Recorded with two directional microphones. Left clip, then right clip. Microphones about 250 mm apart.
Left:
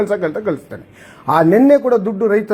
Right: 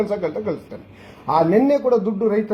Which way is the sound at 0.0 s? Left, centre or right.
Left.